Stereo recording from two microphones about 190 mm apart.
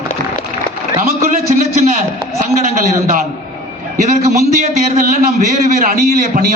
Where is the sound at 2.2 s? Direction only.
35° right (ahead or behind).